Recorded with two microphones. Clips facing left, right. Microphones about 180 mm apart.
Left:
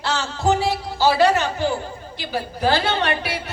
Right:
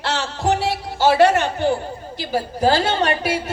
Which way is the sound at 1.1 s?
55° right (ahead or behind).